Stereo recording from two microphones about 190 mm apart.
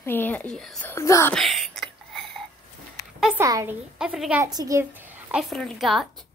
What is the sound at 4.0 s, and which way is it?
Speech, 5° right (ahead or behind).